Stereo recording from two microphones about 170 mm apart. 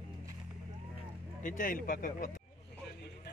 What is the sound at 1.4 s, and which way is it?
Speech, 55° left (ahead or behind).